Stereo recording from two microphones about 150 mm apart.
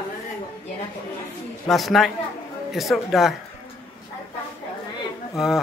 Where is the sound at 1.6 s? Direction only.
Centre (ahead or behind).